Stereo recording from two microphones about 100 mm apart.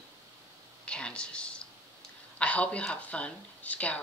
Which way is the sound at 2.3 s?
15° left (ahead or behind).